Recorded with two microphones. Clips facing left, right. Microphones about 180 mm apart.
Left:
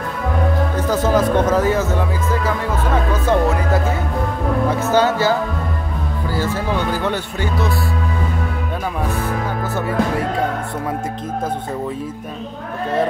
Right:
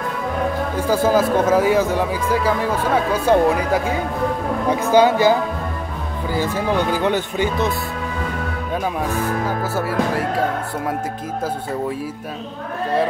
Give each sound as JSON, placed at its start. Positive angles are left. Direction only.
{"t": 0.7, "sound": "speech", "side_deg": -10}
{"t": 6.3, "sound": "speech", "side_deg": -15}
{"t": 9.8, "sound": "speech", "side_deg": -5}